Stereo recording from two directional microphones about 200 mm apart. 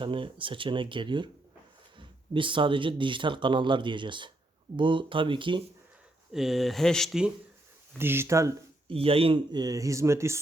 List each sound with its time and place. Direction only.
0.0 s speech: 25° right (ahead or behind)
6.3 s speech: centre (ahead or behind)
8.9 s speech: 30° right (ahead or behind)